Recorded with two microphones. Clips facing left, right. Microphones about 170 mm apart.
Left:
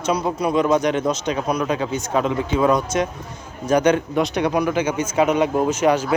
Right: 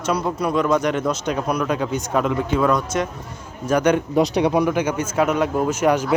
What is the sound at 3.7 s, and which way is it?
Speech, 5° right (ahead or behind).